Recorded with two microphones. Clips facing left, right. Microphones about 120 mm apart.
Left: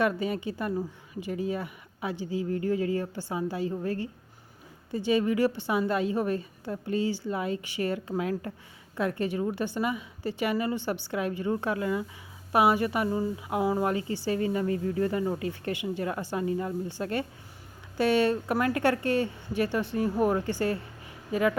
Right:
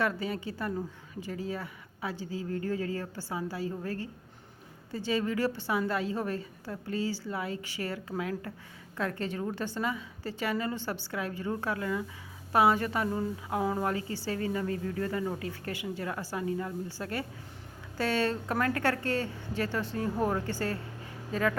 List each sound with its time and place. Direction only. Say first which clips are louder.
0.0 s a woman's voice: left 4 dB; 20° left (ahead or behind)
9.0 s a woman's voice: left 5 dB; 15° left (ahead or behind)